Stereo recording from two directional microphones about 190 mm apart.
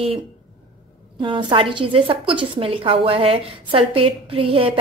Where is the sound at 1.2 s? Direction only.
25° right (ahead or behind).